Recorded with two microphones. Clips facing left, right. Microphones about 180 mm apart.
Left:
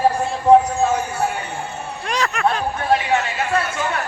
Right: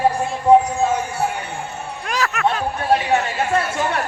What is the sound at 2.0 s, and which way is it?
Music, 5° right (ahead or behind).